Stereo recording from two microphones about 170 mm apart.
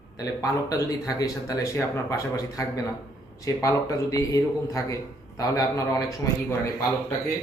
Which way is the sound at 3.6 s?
20° left (ahead or behind).